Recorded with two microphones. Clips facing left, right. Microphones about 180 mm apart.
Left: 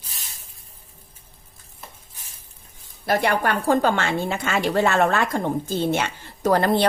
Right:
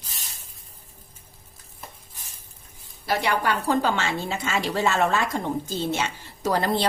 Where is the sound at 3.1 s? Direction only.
50° left (ahead or behind).